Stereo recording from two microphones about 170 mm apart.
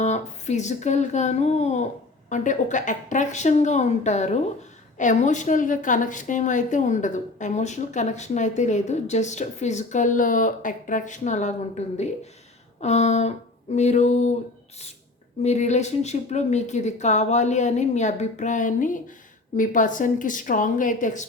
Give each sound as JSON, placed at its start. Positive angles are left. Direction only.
{"t": 0.0, "sound": "a woman's voice", "side_deg": 40}
{"t": 12.8, "sound": "a sound", "side_deg": 40}
{"t": 15.4, "sound": "a woman's voice", "side_deg": 45}